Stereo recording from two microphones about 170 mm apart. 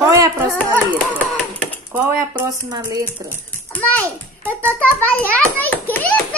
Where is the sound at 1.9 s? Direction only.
10° right (ahead or behind).